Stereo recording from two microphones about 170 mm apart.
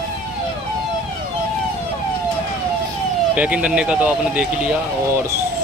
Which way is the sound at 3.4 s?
5° right (ahead or behind).